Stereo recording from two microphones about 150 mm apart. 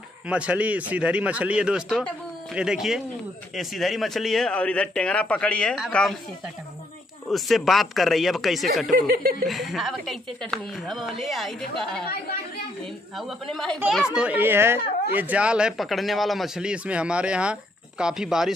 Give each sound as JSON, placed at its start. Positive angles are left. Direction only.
{"t": 0.3, "sound": "a woman's voice", "side_deg": -10}
{"t": 7.2, "sound": "a woman's voice", "side_deg": 0}
{"t": 8.9, "sound": "speech", "side_deg": -75}
{"t": 9.5, "sound": "a woman's voice", "side_deg": 0}
{"t": 13.5, "sound": "a woman's voice", "side_deg": 5}
{"t": 14.1, "sound": "a woman's voice", "side_deg": -10}